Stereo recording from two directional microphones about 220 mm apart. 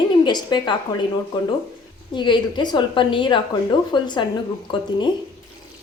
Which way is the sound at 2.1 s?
20° left (ahead or behind).